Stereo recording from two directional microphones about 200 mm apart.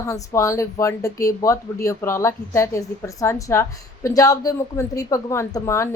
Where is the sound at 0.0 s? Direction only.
15° left (ahead or behind).